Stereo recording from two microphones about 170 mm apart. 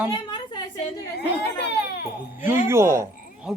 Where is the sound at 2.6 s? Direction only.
15° right (ahead or behind).